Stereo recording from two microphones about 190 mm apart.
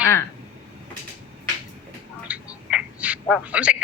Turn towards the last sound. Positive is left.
turn(degrees=-5)  # may be behind; listen again after turning